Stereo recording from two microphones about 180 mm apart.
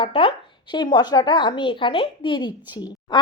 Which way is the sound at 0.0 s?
30° left (ahead or behind).